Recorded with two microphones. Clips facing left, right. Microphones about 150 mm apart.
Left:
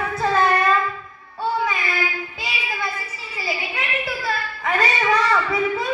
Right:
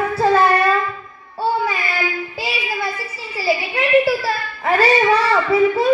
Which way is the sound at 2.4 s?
30° right (ahead or behind).